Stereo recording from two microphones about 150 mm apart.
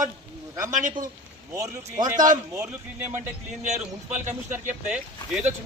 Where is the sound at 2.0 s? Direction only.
60° right (ahead or behind).